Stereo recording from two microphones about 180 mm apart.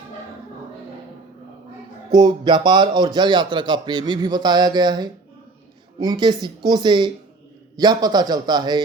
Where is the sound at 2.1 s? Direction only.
25° right (ahead or behind).